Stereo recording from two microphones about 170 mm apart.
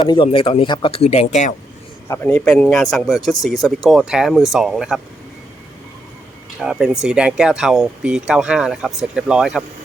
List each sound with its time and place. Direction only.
0.0 s speech: 25° left (ahead or behind); by 1.5 s 45° left (ahead or behind)
2.0 s speech: 10° left (ahead or behind)
6.6 s speech: 5° right (ahead or behind)